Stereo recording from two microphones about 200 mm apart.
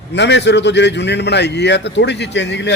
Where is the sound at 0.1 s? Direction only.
60° left (ahead or behind).